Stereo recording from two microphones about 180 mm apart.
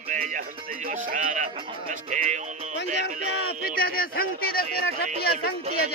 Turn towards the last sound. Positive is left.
turn(degrees=60)  # may be behind; listen again after turning